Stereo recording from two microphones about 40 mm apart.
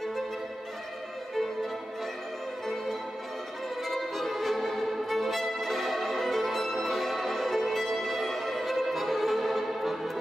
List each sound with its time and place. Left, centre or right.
2.6 s music: centre
3.8 s violin: centre